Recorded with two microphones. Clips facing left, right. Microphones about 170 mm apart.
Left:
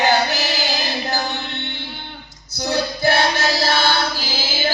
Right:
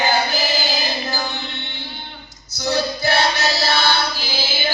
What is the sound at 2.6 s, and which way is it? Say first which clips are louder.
Music: left 1 dB; 55° left (ahead or behind).